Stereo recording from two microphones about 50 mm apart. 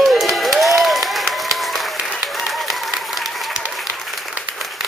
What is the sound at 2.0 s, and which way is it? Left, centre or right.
Applause, centre.